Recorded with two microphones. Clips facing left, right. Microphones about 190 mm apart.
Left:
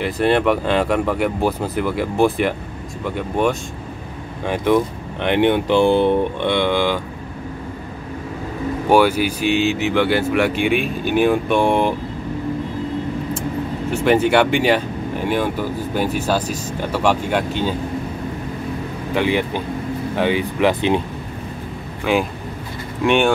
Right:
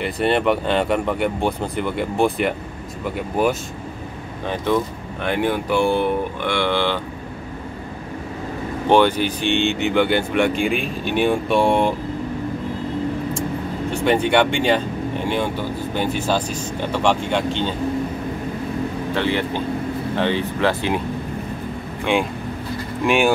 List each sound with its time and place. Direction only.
0.0 s speech: centre (ahead or behind)
4.5 s speech: 15° left (ahead or behind)
8.8 s speech: 10° left (ahead or behind)
14.0 s speech: 5° left (ahead or behind)
19.1 s speech: 15° left (ahead or behind)
22.0 s speech: centre (ahead or behind)